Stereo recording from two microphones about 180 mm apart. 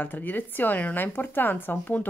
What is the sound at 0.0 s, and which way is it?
A woman's voice, 10° left (ahead or behind).